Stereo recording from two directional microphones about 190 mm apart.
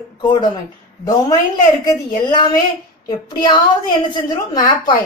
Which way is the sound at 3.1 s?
20° left (ahead or behind).